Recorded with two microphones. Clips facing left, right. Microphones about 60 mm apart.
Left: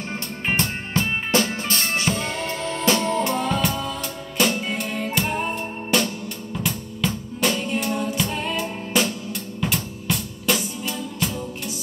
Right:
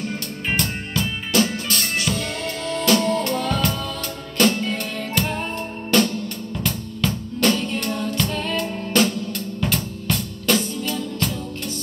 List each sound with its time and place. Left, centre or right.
0.1 s drum: left
4.4 s music: centre